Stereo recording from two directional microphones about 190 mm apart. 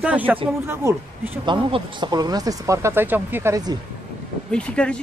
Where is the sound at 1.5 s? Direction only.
25° right (ahead or behind).